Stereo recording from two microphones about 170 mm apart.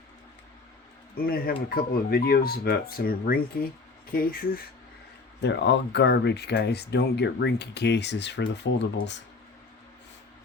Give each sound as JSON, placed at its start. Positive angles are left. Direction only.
{"t": 1.1, "sound": "speech", "side_deg": 60}
{"t": 5.4, "sound": "speech", "side_deg": 90}